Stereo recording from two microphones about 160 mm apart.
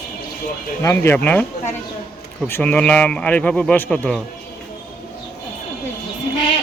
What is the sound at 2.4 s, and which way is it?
A man's voice, 10° left (ahead or behind).